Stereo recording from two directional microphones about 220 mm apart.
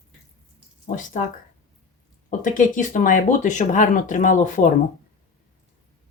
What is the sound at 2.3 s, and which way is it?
Speech, 35° left (ahead or behind).